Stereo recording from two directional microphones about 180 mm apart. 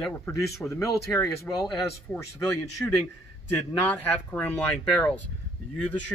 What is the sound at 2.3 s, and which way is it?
Speech, 15° left (ahead or behind).